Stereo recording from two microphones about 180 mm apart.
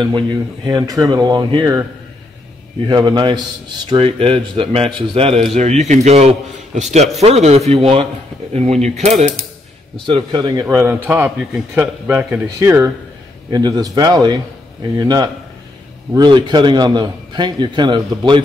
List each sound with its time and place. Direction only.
0.7 s a man's voice: 20° right (ahead or behind)
2.9 s a man's voice: 25° right (ahead or behind); by 9.2 s 40° right (ahead or behind)
10.0 s a man's voice: 25° right (ahead or behind)